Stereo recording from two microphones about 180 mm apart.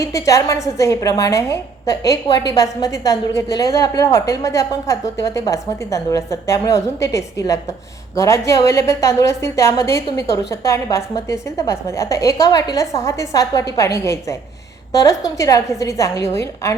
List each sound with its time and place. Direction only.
0.0 s a woman's voice: 15° left (ahead or behind)